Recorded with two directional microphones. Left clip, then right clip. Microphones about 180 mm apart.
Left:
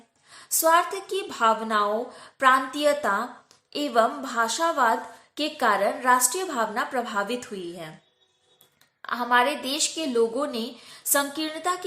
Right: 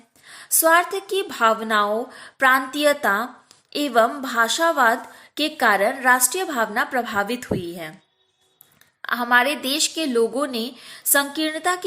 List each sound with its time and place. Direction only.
0.3 s a woman's voice: 25° right (ahead or behind)
9.0 s a woman's voice: 25° right (ahead or behind)